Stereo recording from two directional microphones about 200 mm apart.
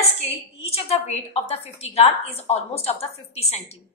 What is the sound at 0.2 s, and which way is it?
A woman's voice, 30° left (ahead or behind).